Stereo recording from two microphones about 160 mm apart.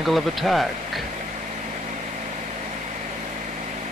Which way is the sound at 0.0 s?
Centre (ahead or behind).